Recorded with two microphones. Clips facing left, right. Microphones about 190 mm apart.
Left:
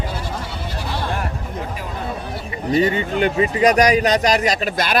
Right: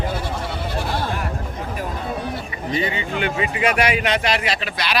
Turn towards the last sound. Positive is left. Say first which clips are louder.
# left 5 dB
turn(degrees=45)  # may be behind; listen again after turning